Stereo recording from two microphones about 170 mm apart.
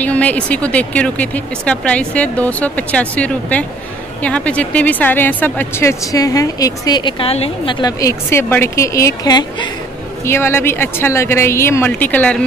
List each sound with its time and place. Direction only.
0.0 s speech: 10° left (ahead or behind); by 7.7 s 35° left (ahead or behind)
7.8 s speech: 20° left (ahead or behind)